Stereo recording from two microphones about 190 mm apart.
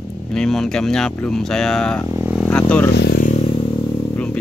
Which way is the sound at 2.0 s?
10° right (ahead or behind).